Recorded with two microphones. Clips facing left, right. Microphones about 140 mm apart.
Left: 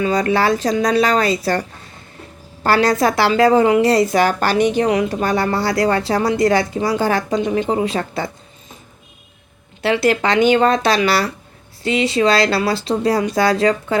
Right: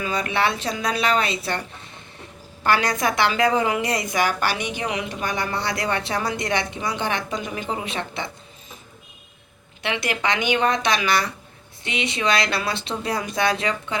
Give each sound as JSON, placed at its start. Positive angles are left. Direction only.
{"t": 0.0, "sound": "a woman's voice", "side_deg": 40}
{"t": 2.6, "sound": "a woman's voice", "side_deg": 35}
{"t": 5.5, "sound": "speech", "side_deg": -20}
{"t": 5.8, "sound": "a woman's voice", "side_deg": 30}
{"t": 7.4, "sound": "speech", "side_deg": 25}
{"t": 7.9, "sound": "a woman's voice", "side_deg": 40}
{"t": 10.1, "sound": "a woman's voice", "side_deg": 35}
{"t": 11.8, "sound": "speech", "side_deg": -20}
{"t": 12.0, "sound": "a woman's voice", "side_deg": 30}